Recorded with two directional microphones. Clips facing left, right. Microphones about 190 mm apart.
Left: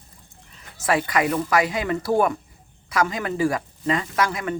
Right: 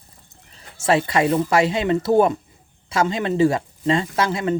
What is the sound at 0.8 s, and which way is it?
Speech, 25° right (ahead or behind).